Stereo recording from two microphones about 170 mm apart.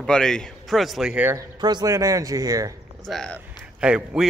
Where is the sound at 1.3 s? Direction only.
25° right (ahead or behind).